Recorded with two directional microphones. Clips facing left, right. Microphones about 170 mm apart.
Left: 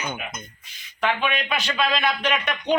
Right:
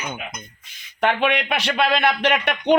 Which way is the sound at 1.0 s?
70° right (ahead or behind).